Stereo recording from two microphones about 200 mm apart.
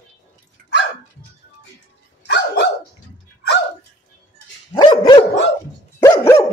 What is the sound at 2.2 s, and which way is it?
Dog, 60° left (ahead or behind).